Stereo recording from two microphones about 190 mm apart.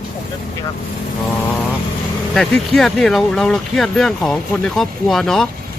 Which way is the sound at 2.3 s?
Centre (ahead or behind).